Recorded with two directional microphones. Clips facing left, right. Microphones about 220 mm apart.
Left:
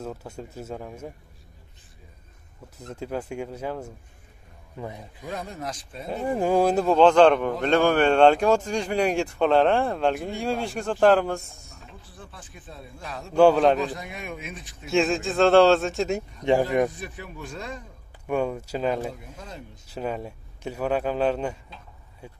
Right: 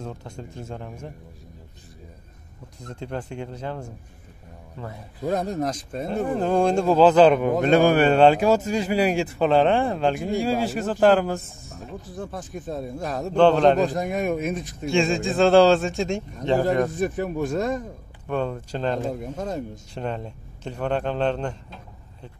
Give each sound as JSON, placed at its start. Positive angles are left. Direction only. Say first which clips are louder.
{"t": 0.0, "sound": "a man's voice", "louder": "left 1 dB", "side_deg": 5}
{"t": 2.8, "sound": "a man's voice", "louder": "left 1 dB", "side_deg": 5}
{"t": 5.2, "sound": "speech", "louder": "right 9 dB", "side_deg": -40}
{"t": 6.2, "sound": "speech", "louder": "left 1 dB", "side_deg": 10}
{"t": 11.9, "sound": "speech", "louder": "right 14 dB", "side_deg": -45}
{"t": 13.4, "sound": "a man's voice", "louder": "right 1 dB", "side_deg": 5}
{"t": 13.7, "sound": "speech", "louder": "right 7 dB", "side_deg": -45}
{"t": 14.9, "sound": "speech", "louder": "right 1 dB", "side_deg": 0}
{"t": 17.0, "sound": "speech", "louder": "right 13 dB", "side_deg": -45}
{"t": 18.2, "sound": "a man's voice", "louder": "left 1 dB", "side_deg": 10}
{"t": 19.1, "sound": "speech", "louder": "right 12 dB", "side_deg": -45}
{"t": 19.9, "sound": "a man's voice", "louder": "left 3 dB", "side_deg": 5}